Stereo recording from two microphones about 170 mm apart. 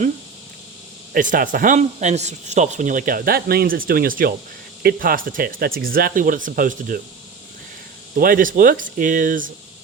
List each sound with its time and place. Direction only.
1.1 s a man's voice: 50° right (ahead or behind)
8.1 s a man's voice: 55° right (ahead or behind)